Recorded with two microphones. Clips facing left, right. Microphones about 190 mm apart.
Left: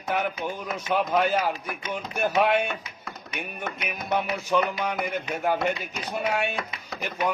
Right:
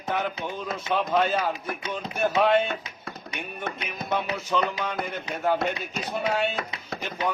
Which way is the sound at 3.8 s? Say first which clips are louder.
Left 2 dB; 10° left (ahead or behind).